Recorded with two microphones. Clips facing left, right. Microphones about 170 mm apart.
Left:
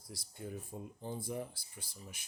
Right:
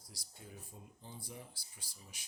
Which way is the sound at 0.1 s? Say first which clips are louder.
Left 10 dB; 55° left (ahead or behind).